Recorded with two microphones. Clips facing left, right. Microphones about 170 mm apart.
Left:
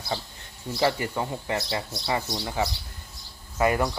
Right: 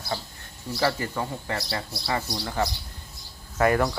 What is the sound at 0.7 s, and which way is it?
Speech, 15° left (ahead or behind).